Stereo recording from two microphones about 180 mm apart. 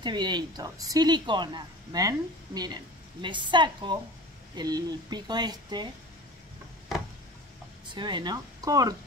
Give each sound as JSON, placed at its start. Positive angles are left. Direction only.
{"t": 0.0, "sound": "speech", "side_deg": -25}
{"t": 7.9, "sound": "speech", "side_deg": -25}